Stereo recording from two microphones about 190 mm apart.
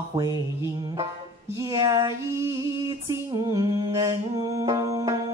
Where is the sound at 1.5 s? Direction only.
20° right (ahead or behind).